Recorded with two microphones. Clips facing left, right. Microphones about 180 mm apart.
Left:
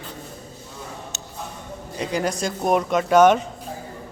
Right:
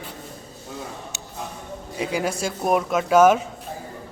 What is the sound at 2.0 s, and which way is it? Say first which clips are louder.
A man's voice: left 1 dB; 5° right (ahead or behind).